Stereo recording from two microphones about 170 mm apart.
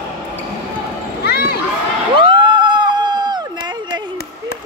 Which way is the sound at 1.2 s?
70° left (ahead or behind).